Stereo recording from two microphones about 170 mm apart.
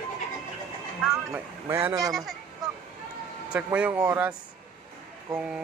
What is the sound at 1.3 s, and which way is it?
Speech, 15° right (ahead or behind).